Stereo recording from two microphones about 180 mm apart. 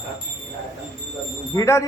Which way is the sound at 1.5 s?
15° left (ahead or behind).